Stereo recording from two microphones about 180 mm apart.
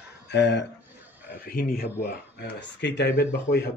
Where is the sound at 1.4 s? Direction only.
55° left (ahead or behind); by 3.3 s 70° left (ahead or behind).